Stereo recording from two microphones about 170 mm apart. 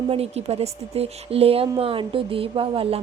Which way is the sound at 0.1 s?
35° right (ahead or behind).